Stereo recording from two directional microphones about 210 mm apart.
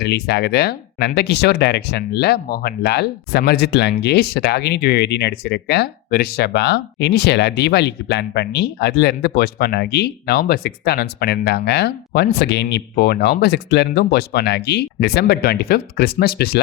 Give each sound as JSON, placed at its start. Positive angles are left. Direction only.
{"t": 0.0, "sound": "speech", "side_deg": 50}